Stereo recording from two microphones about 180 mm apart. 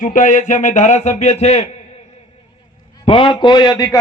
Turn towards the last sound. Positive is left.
turn(degrees=20)  # may be behind; listen again after turning